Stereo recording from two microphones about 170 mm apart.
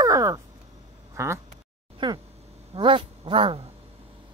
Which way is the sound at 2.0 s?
30° right (ahead or behind).